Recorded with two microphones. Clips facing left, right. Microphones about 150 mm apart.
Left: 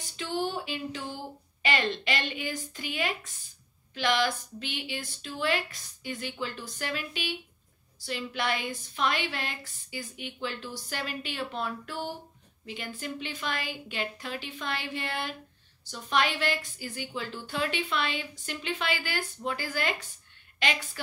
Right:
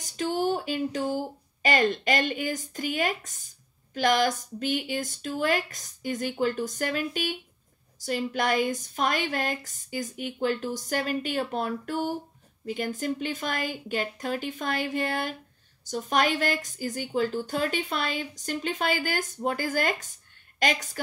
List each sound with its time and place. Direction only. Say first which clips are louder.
0.0 s a woman's voice: right 5 dB; 45° right (ahead or behind)